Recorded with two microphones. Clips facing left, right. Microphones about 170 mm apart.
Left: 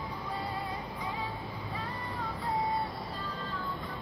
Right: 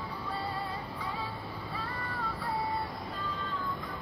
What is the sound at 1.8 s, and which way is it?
Vehicle, 15° left (ahead or behind).